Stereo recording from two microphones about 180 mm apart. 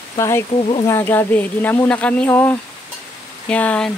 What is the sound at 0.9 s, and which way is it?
Speech, 15° left (ahead or behind).